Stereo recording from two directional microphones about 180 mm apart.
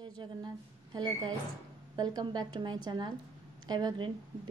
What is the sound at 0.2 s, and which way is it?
Speech, 25° right (ahead or behind).